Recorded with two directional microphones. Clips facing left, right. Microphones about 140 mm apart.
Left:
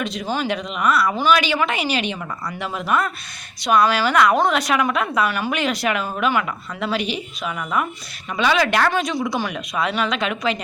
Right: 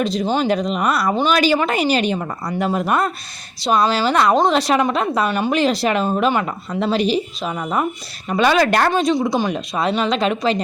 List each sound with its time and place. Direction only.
0.0 s a woman's voice: 35° right (ahead or behind)
3.6 s a woman's voice: 25° right (ahead or behind)
8.3 s a woman's voice: 45° right (ahead or behind)
8.9 s a woman's voice: 25° right (ahead or behind)